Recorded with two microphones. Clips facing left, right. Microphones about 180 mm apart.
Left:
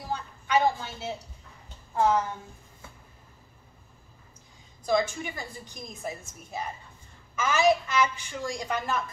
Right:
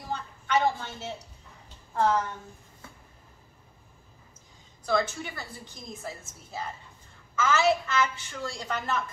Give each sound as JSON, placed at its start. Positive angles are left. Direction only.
{"t": 0.1, "sound": "a sound", "side_deg": 10}
{"t": 2.0, "sound": "a woman's voice", "side_deg": 10}
{"t": 4.8, "sound": "a woman's voice", "side_deg": 15}
{"t": 7.3, "sound": "a woman's voice", "side_deg": 15}